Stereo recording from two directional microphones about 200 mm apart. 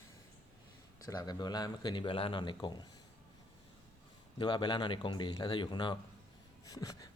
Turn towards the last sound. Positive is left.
turn(degrees=20)  # may be behind; listen again after turning